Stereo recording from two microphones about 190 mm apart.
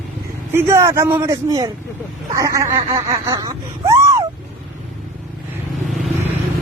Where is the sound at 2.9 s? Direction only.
20° right (ahead or behind).